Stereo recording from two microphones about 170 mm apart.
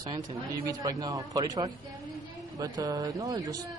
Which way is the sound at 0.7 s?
20° right (ahead or behind).